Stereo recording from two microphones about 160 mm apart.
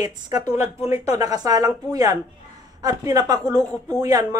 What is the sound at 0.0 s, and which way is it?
Speech, 25° right (ahead or behind).